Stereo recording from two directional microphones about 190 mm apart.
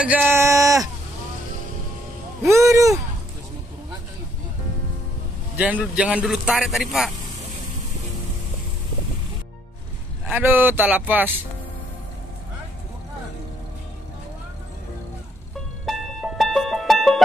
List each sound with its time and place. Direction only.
0.0 s speech: 5° right (ahead or behind)
2.4 s speech: 15° right (ahead or behind)
5.6 s speech: 5° right (ahead or behind)
10.2 s speech: 10° right (ahead or behind)
15.8 s music: centre (ahead or behind)